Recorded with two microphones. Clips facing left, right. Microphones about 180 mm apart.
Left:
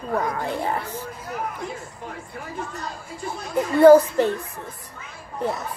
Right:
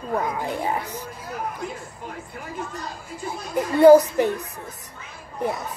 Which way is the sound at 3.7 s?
15° right (ahead or behind).